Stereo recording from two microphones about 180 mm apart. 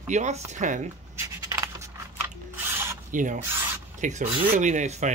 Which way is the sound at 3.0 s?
45° right (ahead or behind).